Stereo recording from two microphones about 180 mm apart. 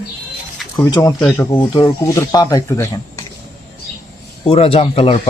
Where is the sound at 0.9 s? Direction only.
20° left (ahead or behind).